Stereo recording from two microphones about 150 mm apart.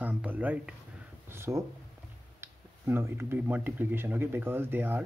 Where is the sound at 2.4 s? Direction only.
15° right (ahead or behind).